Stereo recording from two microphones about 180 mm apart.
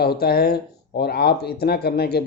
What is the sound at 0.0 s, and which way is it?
Speech, 60° left (ahead or behind).